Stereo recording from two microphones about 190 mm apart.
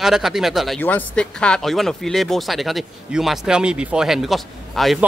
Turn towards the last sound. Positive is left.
turn(degrees=0)  # may be behind; listen again after turning